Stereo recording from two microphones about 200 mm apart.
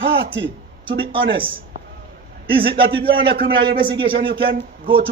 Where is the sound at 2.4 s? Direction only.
25° right (ahead or behind).